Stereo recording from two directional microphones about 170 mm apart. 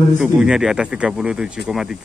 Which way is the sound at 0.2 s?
5° right (ahead or behind).